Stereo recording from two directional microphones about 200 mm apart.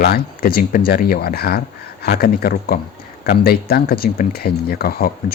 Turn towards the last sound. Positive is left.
turn(degrees=50)  # may be behind; listen again after turning